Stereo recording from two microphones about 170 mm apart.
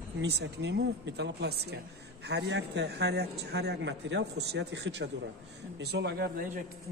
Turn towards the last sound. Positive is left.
turn(degrees=-65)  # may be behind; listen again after turning